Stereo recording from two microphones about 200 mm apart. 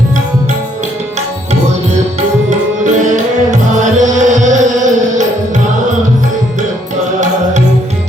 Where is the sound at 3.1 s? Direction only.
40° right (ahead or behind).